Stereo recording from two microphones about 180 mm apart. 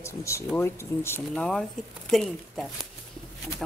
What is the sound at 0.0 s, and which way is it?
A woman's voice, 15° left (ahead or behind).